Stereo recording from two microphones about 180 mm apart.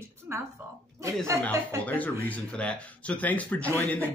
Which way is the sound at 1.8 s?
10° left (ahead or behind).